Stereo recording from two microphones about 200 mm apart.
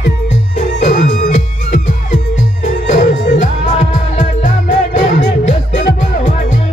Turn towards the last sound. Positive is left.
turn(degrees=35)  # may be behind; listen again after turning